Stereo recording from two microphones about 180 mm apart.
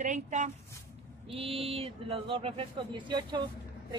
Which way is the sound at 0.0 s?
40° right (ahead or behind).